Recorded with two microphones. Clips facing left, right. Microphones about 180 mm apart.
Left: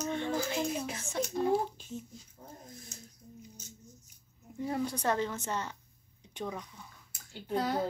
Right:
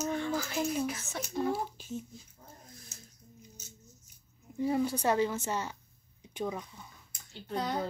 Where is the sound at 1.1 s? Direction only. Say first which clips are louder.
Left 4 dB; 5° right (ahead or behind).